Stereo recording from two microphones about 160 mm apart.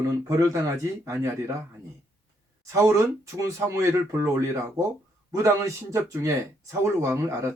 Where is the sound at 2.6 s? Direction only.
20° right (ahead or behind).